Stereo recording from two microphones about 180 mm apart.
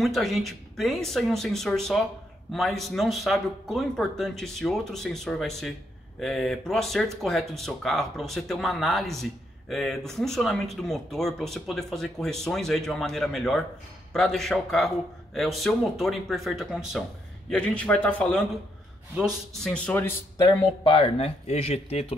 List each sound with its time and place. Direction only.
0.0 s a man's voice: centre (ahead or behind)
20.4 s speech: 30° left (ahead or behind)